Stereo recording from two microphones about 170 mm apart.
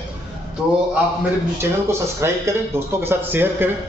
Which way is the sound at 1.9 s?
15° right (ahead or behind).